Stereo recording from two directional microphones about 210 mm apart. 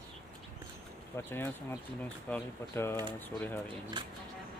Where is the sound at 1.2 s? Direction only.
10° left (ahead or behind).